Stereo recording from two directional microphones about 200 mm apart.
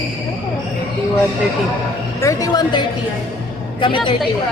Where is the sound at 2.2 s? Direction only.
15° left (ahead or behind).